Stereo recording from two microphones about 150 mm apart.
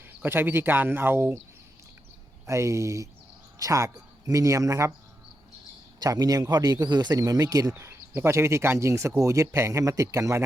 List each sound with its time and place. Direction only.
0.2 s speech: 15° right (ahead or behind)
2.5 s a man's voice: 20° right (ahead or behind)
6.0 s a man's voice: 25° right (ahead or behind)